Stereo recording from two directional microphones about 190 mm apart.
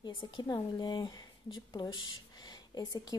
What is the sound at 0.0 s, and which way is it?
Speech, 25° left (ahead or behind).